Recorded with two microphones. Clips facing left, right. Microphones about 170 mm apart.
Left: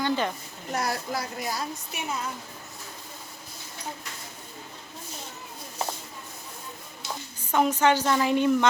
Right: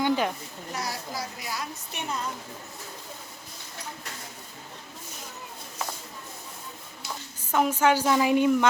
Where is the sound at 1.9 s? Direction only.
5° left (ahead or behind).